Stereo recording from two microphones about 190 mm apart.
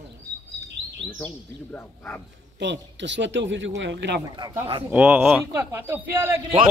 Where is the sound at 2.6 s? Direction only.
70° right (ahead or behind).